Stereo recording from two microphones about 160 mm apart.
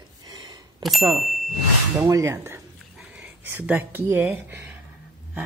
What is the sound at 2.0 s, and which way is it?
Speech, 20° right (ahead or behind).